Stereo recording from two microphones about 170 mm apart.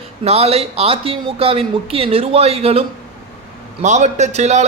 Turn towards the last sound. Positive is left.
turn(degrees=-40)  # may be behind; listen again after turning